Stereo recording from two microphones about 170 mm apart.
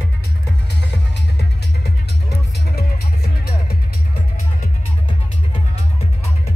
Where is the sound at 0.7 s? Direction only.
85° left; by 3.7 s 65° left (ahead or behind).